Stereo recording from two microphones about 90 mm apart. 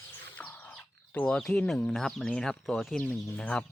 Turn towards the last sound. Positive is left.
turn(degrees=10)  # may be behind; listen again after turning